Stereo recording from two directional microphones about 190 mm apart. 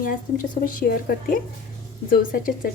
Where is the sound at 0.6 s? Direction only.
45° left (ahead or behind).